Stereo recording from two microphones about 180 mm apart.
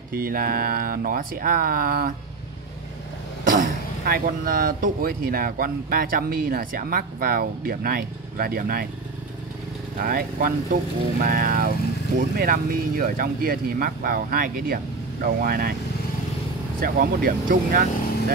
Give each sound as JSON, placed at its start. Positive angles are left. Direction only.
{"t": 0.1, "sound": "speech", "side_deg": -55}
{"t": 3.4, "sound": "speech", "side_deg": -50}
{"t": 9.9, "sound": "speech", "side_deg": -55}
{"t": 16.8, "sound": "speech", "side_deg": -55}